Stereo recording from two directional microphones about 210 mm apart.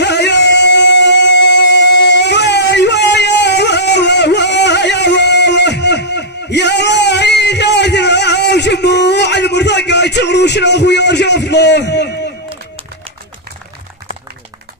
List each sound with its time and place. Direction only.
0.0 s music: 55° left (ahead or behind)